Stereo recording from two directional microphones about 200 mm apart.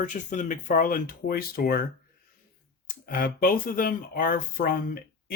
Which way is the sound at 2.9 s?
45° left (ahead or behind).